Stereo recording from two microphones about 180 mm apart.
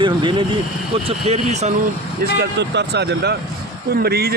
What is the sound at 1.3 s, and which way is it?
Speech, 40° right (ahead or behind).